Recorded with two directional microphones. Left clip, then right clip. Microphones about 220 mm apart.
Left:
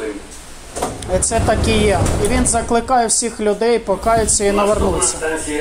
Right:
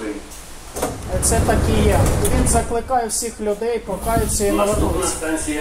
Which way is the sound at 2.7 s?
55° left (ahead or behind).